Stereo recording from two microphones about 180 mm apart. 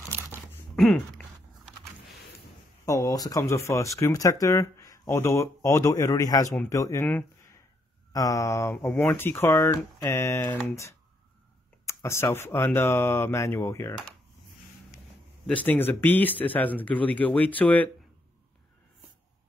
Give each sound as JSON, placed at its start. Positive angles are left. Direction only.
{"t": 0.7, "sound": "speech", "side_deg": 0}
{"t": 2.8, "sound": "speech", "side_deg": 15}
{"t": 11.8, "sound": "speech", "side_deg": 15}
{"t": 15.4, "sound": "speech", "side_deg": 10}